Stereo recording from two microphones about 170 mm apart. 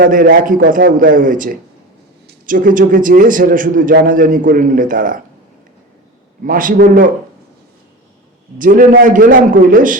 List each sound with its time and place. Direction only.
0.0 s a man's voice: 55° right (ahead or behind)
6.4 s a man's voice: 55° right (ahead or behind)
8.5 s a man's voice: 50° right (ahead or behind)